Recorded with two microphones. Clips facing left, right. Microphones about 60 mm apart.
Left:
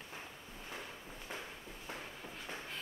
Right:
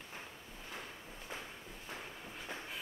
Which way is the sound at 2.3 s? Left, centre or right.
Centre.